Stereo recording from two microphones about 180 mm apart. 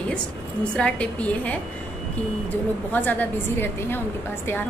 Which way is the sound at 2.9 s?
10° left (ahead or behind).